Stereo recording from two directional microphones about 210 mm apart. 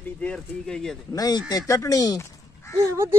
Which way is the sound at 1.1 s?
20° left (ahead or behind).